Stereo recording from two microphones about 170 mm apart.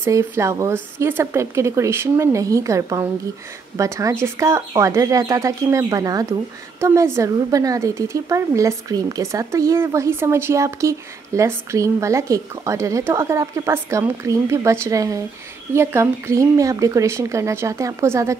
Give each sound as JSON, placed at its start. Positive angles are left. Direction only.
{"t": 0.0, "sound": "speech", "side_deg": -15}